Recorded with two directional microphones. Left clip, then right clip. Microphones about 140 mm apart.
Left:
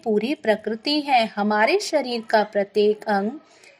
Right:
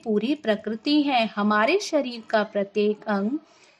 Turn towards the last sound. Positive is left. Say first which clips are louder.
# left 5 dB
turn(degrees=0)  # may be behind; listen again after turning